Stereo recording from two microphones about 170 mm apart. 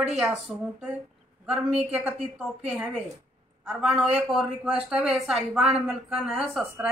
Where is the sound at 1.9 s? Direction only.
10° right (ahead or behind).